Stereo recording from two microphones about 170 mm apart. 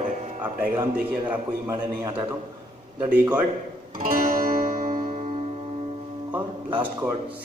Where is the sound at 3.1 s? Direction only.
10° right (ahead or behind).